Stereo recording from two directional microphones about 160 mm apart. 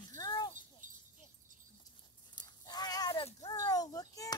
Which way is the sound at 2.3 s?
25° left (ahead or behind).